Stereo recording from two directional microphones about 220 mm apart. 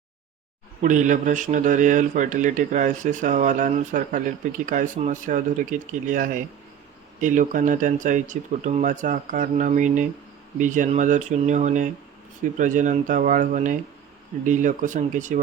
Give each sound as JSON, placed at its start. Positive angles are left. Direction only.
{"t": 0.8, "sound": "speech", "side_deg": -35}